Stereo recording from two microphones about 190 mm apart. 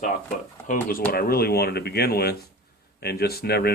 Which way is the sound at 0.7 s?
50° left (ahead or behind).